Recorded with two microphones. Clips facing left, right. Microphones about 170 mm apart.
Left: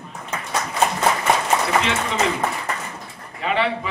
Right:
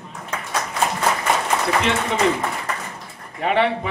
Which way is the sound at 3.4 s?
55° right (ahead or behind).